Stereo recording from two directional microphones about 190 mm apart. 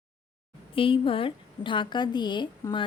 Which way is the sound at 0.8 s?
30° left (ahead or behind).